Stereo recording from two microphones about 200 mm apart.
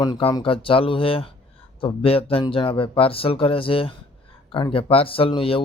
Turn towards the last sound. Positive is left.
turn(degrees=30)  # may be behind; listen again after turning